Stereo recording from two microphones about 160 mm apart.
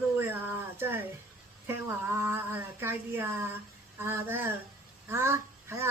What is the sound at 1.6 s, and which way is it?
Speech, 15° right (ahead or behind).